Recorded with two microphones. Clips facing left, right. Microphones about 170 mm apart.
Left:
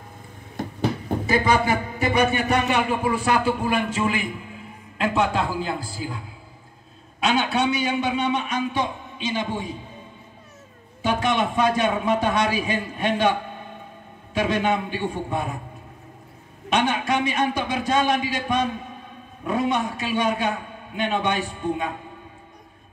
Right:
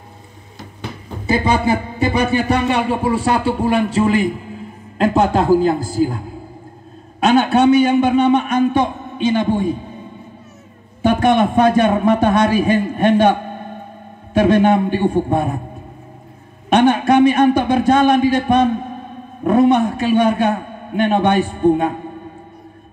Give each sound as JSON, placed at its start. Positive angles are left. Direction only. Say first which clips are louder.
{"t": 0.6, "sound": "a sound", "louder": "left 7 dB", "side_deg": 50}
{"t": 1.2, "sound": "a man's voice", "louder": "right 5 dB", "side_deg": -30}
{"t": 11.0, "sound": "a man's voice", "louder": "right 9 dB", "side_deg": -55}
{"t": 16.6, "sound": "a man's voice", "louder": "right 10 dB", "side_deg": -55}